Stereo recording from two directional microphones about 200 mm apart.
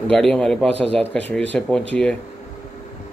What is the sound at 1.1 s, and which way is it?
Speech, 5° left (ahead or behind).